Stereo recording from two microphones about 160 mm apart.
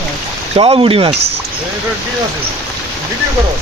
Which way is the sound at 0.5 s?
35° right (ahead or behind).